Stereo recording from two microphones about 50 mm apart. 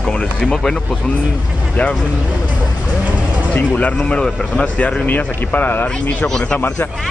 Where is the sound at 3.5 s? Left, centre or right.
Left.